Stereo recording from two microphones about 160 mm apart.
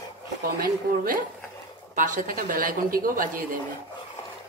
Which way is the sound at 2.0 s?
55° right (ahead or behind).